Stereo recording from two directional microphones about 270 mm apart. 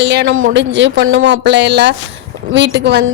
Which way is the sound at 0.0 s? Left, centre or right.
Right.